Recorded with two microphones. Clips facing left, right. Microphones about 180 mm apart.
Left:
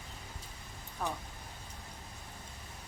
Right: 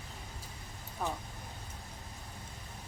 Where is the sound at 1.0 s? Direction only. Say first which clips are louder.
Right 1 dB; 5° right (ahead or behind).